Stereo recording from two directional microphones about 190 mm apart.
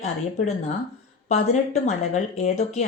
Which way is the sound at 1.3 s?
35° left (ahead or behind).